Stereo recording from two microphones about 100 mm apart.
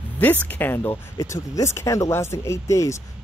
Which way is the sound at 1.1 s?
35° left (ahead or behind).